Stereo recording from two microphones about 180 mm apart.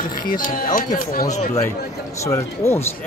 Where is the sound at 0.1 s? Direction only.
50° left (ahead or behind).